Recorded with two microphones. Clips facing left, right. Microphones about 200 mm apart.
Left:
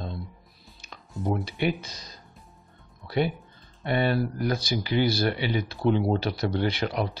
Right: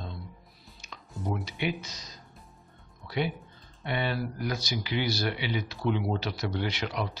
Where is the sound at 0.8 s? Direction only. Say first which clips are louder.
Left 5 dB; 55° left (ahead or behind).